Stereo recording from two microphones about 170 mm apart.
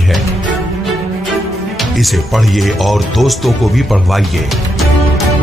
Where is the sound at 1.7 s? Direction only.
Centre (ahead or behind).